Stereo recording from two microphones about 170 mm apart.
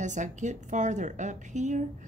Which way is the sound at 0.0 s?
45° right (ahead or behind).